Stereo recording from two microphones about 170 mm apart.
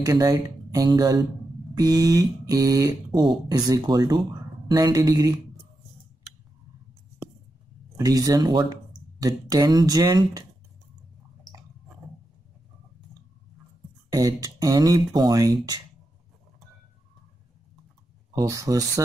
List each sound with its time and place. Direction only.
0.0 s speech: 20° right (ahead or behind)
8.0 s speech: 20° right (ahead or behind)
14.1 s speech: 20° right (ahead or behind)
18.3 s speech: 20° right (ahead or behind)